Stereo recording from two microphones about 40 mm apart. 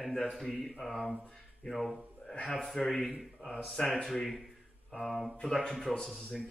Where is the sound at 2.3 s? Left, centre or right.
Left.